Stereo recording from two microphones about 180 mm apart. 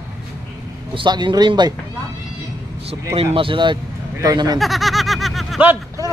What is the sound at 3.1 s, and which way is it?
A man's voice, 30° right (ahead or behind).